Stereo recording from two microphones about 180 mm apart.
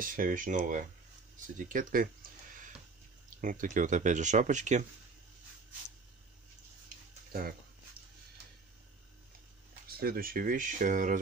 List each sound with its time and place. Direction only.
0.0 s speech: 50° right (ahead or behind)
1.7 s a sound: 50° right (ahead or behind)
3.3 s speech: 45° right (ahead or behind)
9.8 s speech: 60° right (ahead or behind)